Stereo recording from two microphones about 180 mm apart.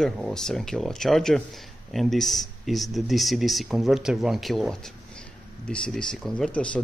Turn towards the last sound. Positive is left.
turn(degrees=5)  # may be behind; listen again after turning